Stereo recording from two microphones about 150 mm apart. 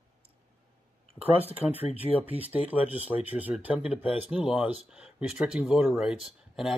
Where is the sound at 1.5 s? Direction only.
10° right (ahead or behind).